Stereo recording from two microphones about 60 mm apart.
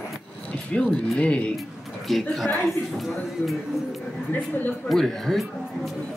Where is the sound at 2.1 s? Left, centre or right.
Centre.